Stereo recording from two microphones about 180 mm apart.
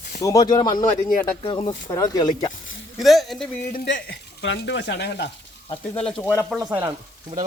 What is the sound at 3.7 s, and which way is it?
Speech, 65° left (ahead or behind).